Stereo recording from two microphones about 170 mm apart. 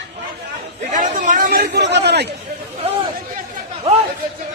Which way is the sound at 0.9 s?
50° right (ahead or behind).